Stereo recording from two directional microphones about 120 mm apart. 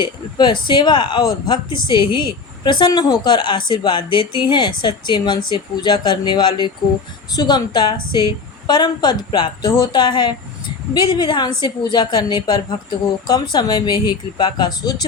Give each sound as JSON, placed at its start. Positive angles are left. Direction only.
{"t": 0.0, "sound": "speech", "side_deg": 40}